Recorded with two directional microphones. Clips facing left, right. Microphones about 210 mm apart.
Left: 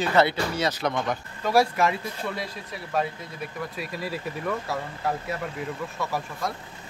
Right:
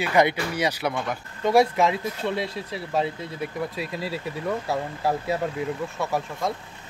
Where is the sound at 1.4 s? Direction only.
20° right (ahead or behind).